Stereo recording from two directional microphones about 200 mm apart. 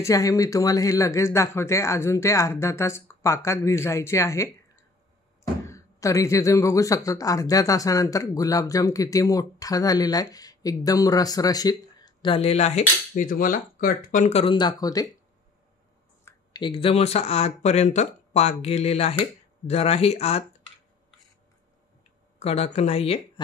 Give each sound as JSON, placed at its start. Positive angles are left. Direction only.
{"t": 0.0, "sound": "speech", "side_deg": 15}
{"t": 5.7, "sound": "speech", "side_deg": 15}
{"t": 14.4, "sound": "speech", "side_deg": 25}
{"t": 16.3, "sound": "speech", "side_deg": 20}
{"t": 22.4, "sound": "speech", "side_deg": 30}